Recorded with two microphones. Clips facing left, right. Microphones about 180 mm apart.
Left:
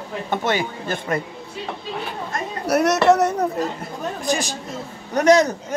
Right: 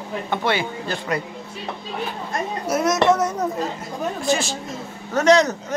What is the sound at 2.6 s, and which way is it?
Speech, 65° left (ahead or behind).